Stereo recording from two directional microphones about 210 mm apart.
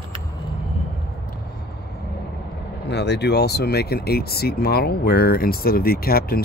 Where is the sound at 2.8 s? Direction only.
55° left (ahead or behind).